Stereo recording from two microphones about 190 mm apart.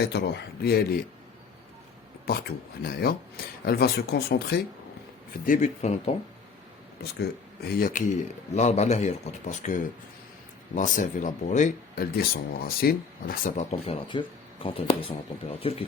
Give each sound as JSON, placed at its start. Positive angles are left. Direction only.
{"t": 0.0, "sound": "speech", "side_deg": 60}
{"t": 2.3, "sound": "speech", "side_deg": 55}
{"t": 5.5, "sound": "speech", "side_deg": 40}
{"t": 7.0, "sound": "speech", "side_deg": 55}
{"t": 14.1, "sound": "speech", "side_deg": 25}